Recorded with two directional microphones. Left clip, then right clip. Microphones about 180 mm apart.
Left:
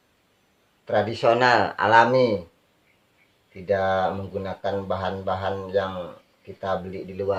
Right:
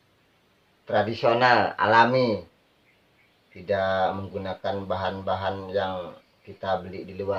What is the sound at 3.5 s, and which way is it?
Speech, 25° left (ahead or behind).